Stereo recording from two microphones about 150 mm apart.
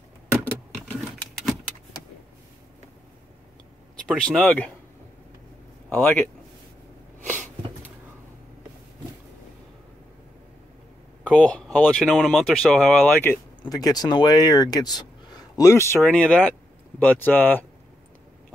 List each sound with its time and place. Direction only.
4.2 s speech: 10° left (ahead or behind)
5.9 s speech: 10° left (ahead or behind)
11.2 s speech: 10° left (ahead or behind)
13.0 s speech: 15° left (ahead or behind)
13.7 s speech: 25° left (ahead or behind)